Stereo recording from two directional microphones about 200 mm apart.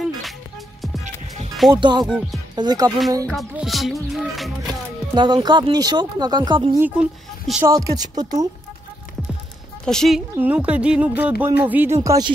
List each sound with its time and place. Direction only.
1.0 s music: 35° right (ahead or behind)
1.8 s speech: 20° right (ahead or behind)
2.0 s speech: 5° right (ahead or behind)
2.5 s speech: 20° right (ahead or behind)
3.3 s speech: centre (ahead or behind)
5.1 s speech: 20° right (ahead or behind)
6.8 s speech: 5° right (ahead or behind)
7.7 s speech: 15° right (ahead or behind)
9.8 s a woman's voice: centre (ahead or behind); by 12.3 s 15° right (ahead or behind)